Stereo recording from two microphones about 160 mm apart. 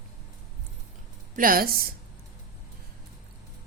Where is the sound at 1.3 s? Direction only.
60° right (ahead or behind).